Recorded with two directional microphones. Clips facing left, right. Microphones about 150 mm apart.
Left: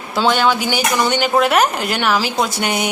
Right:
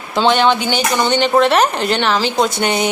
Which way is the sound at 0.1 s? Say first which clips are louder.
Right 2 dB; 5° left (ahead or behind).